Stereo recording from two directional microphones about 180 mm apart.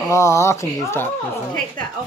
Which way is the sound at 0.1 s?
15° left (ahead or behind).